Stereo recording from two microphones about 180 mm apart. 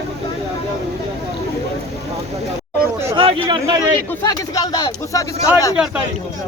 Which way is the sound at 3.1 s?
30° right (ahead or behind).